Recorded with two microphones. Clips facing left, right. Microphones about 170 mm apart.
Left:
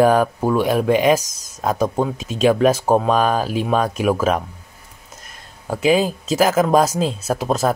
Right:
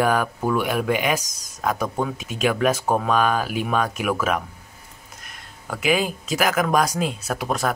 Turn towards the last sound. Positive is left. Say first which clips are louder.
# left 5 dB
turn(degrees=25)  # may be behind; listen again after turning